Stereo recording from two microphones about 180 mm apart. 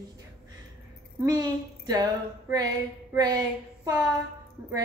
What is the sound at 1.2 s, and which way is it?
A woman's voice, 20° right (ahead or behind).